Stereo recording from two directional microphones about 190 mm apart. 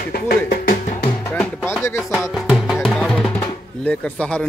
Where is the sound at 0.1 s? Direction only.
55° left (ahead or behind).